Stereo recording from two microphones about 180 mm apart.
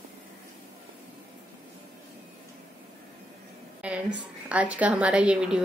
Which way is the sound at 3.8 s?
5° right (ahead or behind).